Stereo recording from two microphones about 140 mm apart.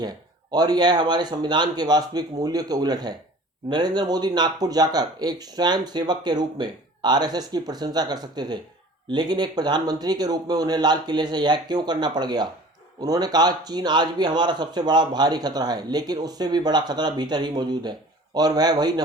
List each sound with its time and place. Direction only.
0.5 s speech: 30° right (ahead or behind)